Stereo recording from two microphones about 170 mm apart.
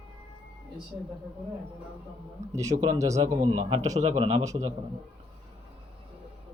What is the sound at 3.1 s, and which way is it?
Speech, 40° right (ahead or behind).